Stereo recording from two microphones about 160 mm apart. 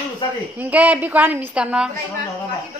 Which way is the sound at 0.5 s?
10° right (ahead or behind).